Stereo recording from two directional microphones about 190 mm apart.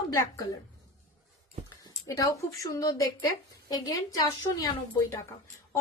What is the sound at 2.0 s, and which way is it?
A woman's voice, 15° left (ahead or behind).